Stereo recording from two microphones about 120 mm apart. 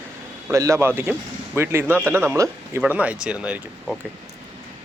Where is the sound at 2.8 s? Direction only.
10° right (ahead or behind).